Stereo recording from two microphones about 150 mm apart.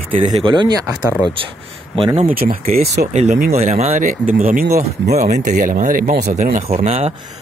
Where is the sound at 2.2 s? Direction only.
75° right (ahead or behind).